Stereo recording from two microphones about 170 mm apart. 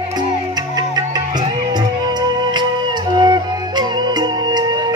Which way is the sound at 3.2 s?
25° right (ahead or behind).